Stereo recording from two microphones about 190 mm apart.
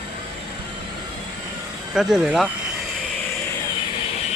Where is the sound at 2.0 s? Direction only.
5° right (ahead or behind).